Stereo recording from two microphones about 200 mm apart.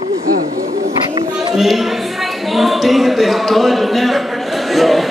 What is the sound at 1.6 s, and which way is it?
Speech, centre (ahead or behind).